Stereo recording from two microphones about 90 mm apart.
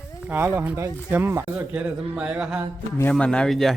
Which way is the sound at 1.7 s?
15° right (ahead or behind).